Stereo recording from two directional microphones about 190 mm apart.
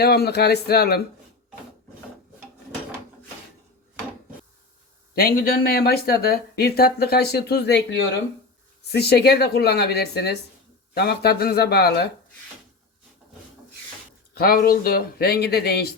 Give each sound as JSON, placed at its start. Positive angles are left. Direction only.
{"t": 0.0, "sound": "speech", "side_deg": 55}
{"t": 5.1, "sound": "speech", "side_deg": 50}
{"t": 14.3, "sound": "speech", "side_deg": 50}